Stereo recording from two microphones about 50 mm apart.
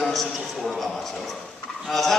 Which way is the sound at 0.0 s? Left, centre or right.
Centre.